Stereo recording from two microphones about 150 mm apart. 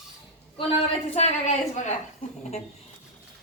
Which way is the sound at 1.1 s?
55° left (ahead or behind).